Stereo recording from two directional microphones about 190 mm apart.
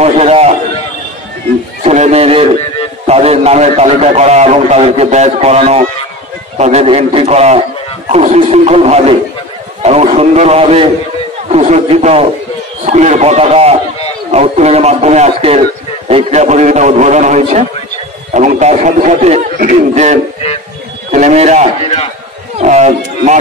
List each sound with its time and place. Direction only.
0.0 s a sound: 35° right (ahead or behind)
1.8 s music: 35° right (ahead or behind)
3.1 s a man's voice: 35° right (ahead or behind)
21.8 s a man's voice: 30° left (ahead or behind)
22.6 s speech: 35° right (ahead or behind)